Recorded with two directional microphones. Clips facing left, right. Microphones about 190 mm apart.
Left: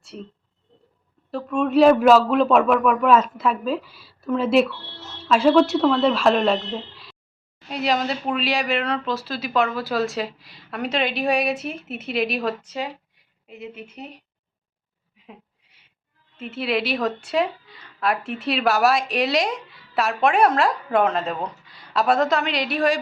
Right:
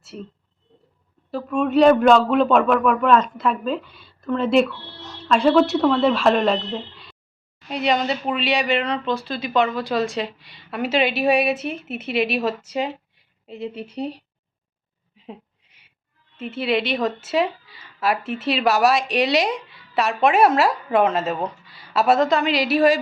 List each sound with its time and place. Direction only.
0.0 s speech: centre (ahead or behind)
1.3 s a woman's voice: centre (ahead or behind)
12.7 s a woman's voice: 25° right (ahead or behind)
16.4 s a woman's voice: centre (ahead or behind)